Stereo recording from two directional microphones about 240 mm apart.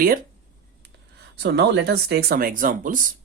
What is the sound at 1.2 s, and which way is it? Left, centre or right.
Speech, right.